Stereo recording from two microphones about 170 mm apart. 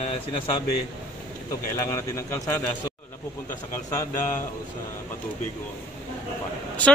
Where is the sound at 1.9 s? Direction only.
20° left (ahead or behind).